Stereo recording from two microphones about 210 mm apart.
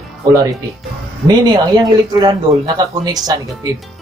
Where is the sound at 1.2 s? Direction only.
20° right (ahead or behind).